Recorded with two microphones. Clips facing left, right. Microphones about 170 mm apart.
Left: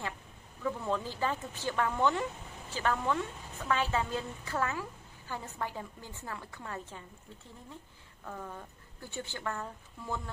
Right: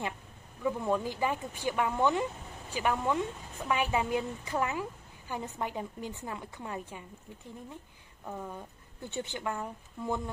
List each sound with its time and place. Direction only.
0.7 s a woman's voice: 15° right (ahead or behind)
8.3 s a woman's voice: 15° right (ahead or behind)